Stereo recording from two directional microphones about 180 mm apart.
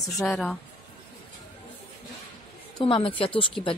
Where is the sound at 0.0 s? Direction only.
Centre (ahead or behind).